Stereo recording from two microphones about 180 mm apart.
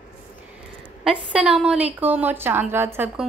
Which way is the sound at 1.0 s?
5° right (ahead or behind).